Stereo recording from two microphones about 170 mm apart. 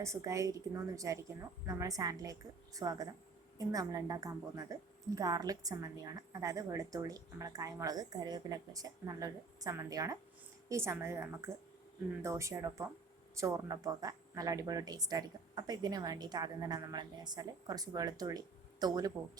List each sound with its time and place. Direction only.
0.0 s a woman's voice: 15° right (ahead or behind)